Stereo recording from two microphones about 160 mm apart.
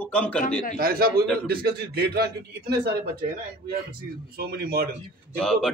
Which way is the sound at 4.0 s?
70° right (ahead or behind).